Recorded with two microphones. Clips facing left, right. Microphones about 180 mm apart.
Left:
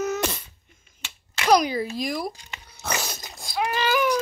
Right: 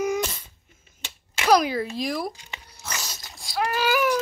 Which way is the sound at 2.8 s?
60° left (ahead or behind).